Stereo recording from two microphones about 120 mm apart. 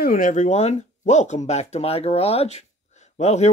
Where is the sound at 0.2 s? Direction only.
85° left.